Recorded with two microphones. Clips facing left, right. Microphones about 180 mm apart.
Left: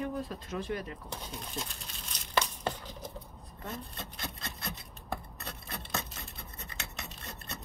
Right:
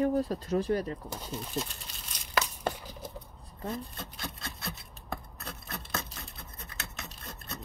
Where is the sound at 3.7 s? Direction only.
Centre (ahead or behind).